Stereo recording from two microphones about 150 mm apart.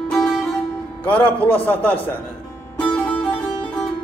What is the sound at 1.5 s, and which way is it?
Speech, 10° left (ahead or behind).